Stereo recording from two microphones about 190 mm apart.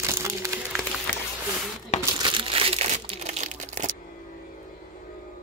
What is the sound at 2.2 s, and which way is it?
Crumpling, 25° right (ahead or behind).